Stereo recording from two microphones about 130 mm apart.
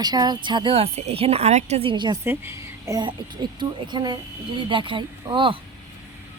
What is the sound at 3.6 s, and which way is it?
Speech, 35° right (ahead or behind).